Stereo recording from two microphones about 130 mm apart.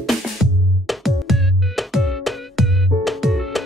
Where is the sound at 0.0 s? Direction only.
Centre (ahead or behind).